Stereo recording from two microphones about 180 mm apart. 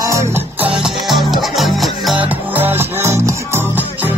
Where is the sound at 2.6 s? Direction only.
10° right (ahead or behind).